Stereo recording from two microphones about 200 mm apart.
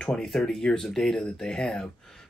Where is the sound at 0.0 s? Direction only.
Centre (ahead or behind).